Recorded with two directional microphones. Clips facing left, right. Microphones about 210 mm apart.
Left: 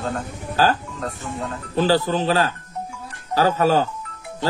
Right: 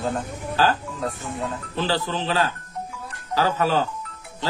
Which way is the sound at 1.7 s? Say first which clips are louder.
Left 8 dB; 40° left (ahead or behind).